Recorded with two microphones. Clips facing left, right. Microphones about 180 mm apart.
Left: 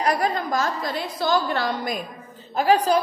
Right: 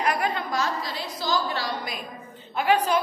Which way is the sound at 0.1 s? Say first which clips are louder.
Left 4 dB; 40° left (ahead or behind).